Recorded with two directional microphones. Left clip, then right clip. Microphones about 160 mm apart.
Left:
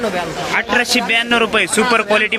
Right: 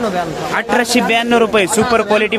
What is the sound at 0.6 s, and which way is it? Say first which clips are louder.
A man's voice: right 1 dB; 25° right (ahead or behind).